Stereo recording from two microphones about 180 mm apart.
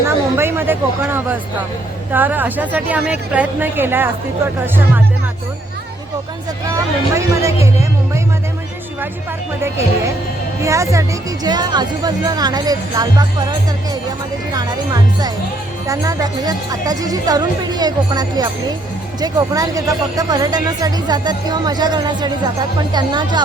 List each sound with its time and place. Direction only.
0.0 s a sound: 15° right (ahead or behind)
2.1 s a woman's voice: 10° right (ahead or behind)
6.7 s speech: 15° right (ahead or behind)
9.6 s a woman's voice: 15° right (ahead or behind)